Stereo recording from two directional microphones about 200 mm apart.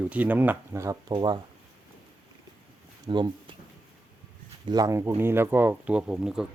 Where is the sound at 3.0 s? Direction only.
20° right (ahead or behind).